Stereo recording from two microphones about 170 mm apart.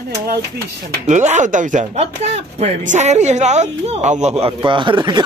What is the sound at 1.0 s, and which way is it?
Speech, 45° right (ahead or behind).